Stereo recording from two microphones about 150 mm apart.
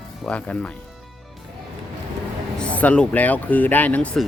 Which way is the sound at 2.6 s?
10° left (ahead or behind).